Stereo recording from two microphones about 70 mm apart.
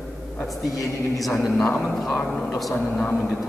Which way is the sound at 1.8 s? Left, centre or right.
Centre.